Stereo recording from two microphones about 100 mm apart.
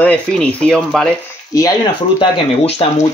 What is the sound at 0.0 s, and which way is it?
Speech, 10° left (ahead or behind).